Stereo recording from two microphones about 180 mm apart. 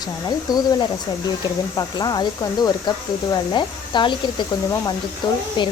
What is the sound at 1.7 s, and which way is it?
Speech, 20° left (ahead or behind).